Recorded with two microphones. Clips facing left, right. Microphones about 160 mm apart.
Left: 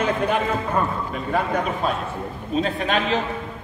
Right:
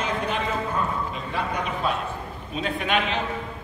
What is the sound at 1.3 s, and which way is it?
Speech, 45° left (ahead or behind).